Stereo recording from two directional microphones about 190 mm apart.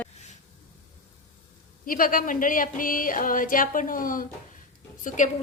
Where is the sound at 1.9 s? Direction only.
45° left (ahead or behind).